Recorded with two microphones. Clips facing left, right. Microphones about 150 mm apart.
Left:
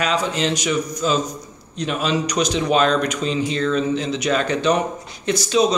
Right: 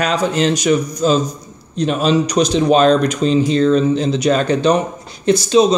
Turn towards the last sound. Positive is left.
turn(degrees=-30)  # may be behind; listen again after turning